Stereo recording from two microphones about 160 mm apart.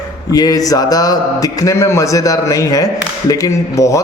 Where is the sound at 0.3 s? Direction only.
25° left (ahead or behind).